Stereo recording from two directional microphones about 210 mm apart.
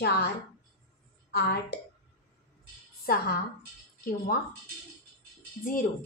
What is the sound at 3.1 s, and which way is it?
Speech, 45° left (ahead or behind).